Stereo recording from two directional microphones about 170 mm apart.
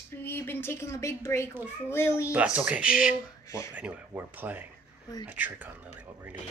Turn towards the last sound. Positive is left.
turn(degrees=-10)  # may be behind; listen again after turning